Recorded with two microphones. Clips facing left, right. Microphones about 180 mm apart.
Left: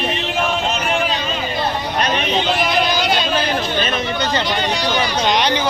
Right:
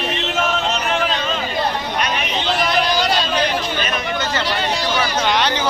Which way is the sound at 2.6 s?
Centre (ahead or behind).